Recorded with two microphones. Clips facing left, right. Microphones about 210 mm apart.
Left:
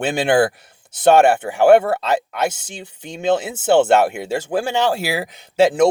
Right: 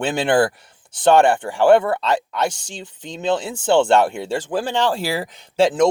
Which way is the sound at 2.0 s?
5° left (ahead or behind).